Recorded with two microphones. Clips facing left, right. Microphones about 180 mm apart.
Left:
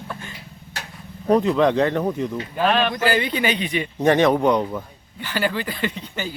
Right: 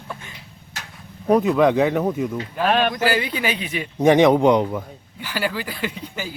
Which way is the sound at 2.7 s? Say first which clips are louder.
Right 1 dB; 50° right (ahead or behind).